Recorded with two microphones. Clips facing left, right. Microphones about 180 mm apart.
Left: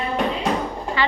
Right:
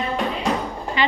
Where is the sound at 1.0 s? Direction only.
20° right (ahead or behind).